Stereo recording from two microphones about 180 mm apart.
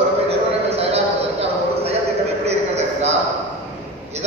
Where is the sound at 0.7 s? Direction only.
35° right (ahead or behind).